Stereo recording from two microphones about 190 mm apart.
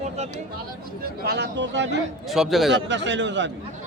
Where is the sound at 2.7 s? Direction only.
70° right (ahead or behind).